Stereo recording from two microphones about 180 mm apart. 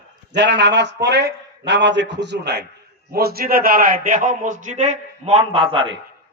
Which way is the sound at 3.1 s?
60° right (ahead or behind).